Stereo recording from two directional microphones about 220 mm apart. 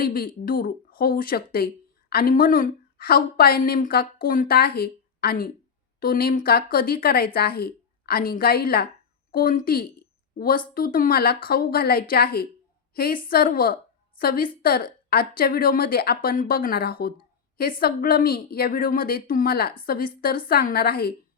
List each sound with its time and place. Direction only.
0.0 s a woman's voice: 40° left (ahead or behind)